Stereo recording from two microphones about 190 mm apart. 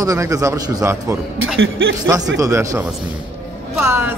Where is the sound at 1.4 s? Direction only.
90° right.